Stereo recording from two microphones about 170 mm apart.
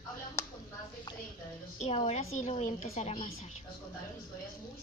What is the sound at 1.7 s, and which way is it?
A woman's voice, 40° left (ahead or behind).